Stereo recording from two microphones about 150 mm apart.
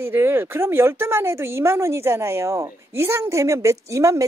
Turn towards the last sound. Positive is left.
turn(degrees=-20)  # may be behind; listen again after turning